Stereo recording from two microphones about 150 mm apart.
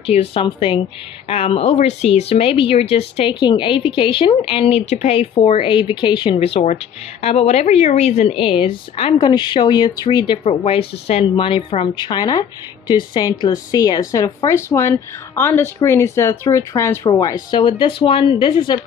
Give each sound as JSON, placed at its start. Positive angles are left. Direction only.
{"t": 0.0, "sound": "speech", "side_deg": 40}
{"t": 5.3, "sound": "a woman's voice", "side_deg": 35}